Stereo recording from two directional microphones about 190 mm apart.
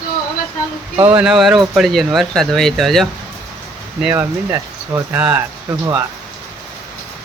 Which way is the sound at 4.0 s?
10° right (ahead or behind).